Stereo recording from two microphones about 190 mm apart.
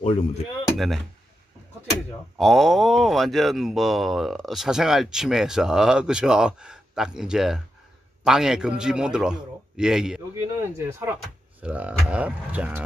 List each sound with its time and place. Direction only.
0.0 s speech: 30° left (ahead or behind)
0.7 s speech: centre (ahead or behind)
2.3 s speech: centre (ahead or behind)
10.3 s speech: 15° right (ahead or behind)